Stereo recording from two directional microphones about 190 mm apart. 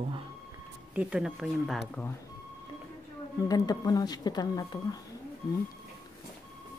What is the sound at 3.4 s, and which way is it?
Speech, 20° left (ahead or behind).